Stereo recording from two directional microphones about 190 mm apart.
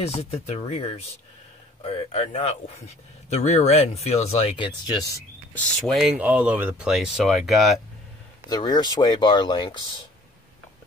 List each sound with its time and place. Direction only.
0.0 s speech: 35° left (ahead or behind)
5.5 s speech: centre (ahead or behind)
8.5 s speech: 20° left (ahead or behind)